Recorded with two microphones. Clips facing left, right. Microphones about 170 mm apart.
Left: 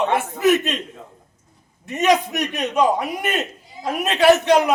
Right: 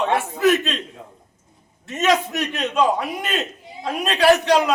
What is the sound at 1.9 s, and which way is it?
A man's voice, 15° left (ahead or behind).